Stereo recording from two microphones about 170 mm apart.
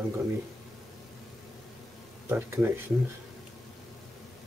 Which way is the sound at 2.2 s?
15° right (ahead or behind).